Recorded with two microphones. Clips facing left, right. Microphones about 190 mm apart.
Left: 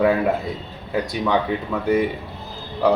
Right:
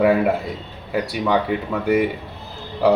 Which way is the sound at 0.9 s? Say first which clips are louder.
Right 1 dB; 5° right (ahead or behind).